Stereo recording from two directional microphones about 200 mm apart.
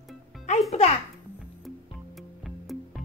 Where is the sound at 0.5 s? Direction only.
35° left (ahead or behind).